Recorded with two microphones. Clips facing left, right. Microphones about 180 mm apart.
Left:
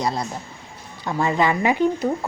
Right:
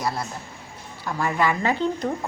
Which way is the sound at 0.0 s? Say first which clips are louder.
Left 3 dB; 20° left (ahead or behind).